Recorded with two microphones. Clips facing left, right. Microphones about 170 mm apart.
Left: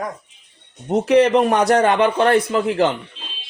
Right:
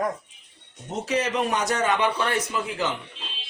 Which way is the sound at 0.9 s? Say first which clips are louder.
Left 12 dB; 60° left (ahead or behind).